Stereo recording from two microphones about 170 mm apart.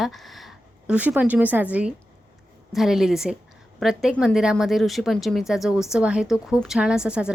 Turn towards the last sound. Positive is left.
turn(degrees=-5)  # may be behind; listen again after turning